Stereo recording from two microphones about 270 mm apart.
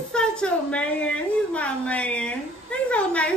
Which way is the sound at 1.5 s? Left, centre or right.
Centre.